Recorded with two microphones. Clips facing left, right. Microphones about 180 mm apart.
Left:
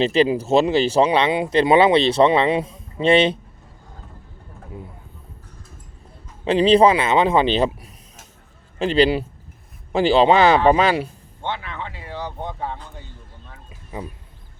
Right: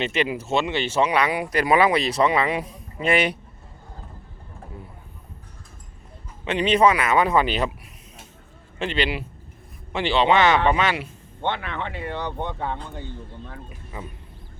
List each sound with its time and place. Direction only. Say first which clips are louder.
0.0 s speech: left 7 dB; 35° left (ahead or behind)
6.4 s speech: left 5 dB; 30° left (ahead or behind)
8.8 s speech: left 8 dB; 35° left (ahead or behind)
11.4 s speech: right 2 dB; 60° right (ahead or behind)
13.9 s speech: left 5 dB; 20° left (ahead or behind)